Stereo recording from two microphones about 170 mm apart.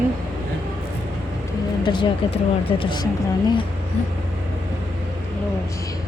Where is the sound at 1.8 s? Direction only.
25° left (ahead or behind).